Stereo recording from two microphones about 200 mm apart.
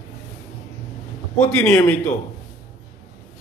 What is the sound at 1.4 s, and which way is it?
Speech, 5° left (ahead or behind).